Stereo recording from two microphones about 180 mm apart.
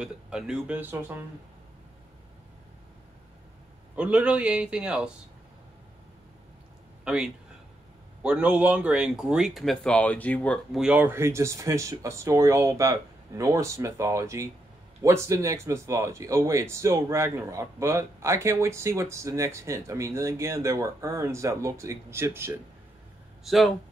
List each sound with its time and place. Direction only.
0.0 s speech: 5° right (ahead or behind)
3.9 s speech: 5° right (ahead or behind)
7.1 s speech: 5° right (ahead or behind)
10.8 s speech: 10° right (ahead or behind)
23.4 s speech: centre (ahead or behind)